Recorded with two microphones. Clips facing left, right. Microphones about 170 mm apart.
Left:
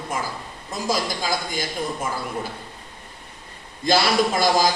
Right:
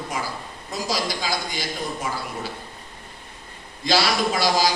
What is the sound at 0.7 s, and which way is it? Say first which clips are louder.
Speech: left 2 dB; 50° left (ahead or behind).